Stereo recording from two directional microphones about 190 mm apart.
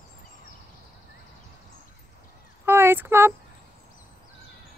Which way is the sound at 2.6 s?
10° right (ahead or behind).